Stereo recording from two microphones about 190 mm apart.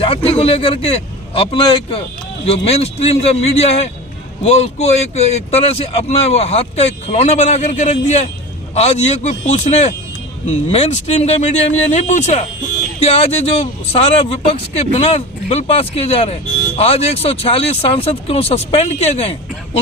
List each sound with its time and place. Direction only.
0.0 s a man's voice: 30° left (ahead or behind)